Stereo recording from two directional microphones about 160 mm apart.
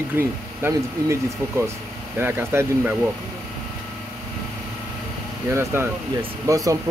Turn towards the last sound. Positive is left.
turn(degrees=-20)  # may be behind; listen again after turning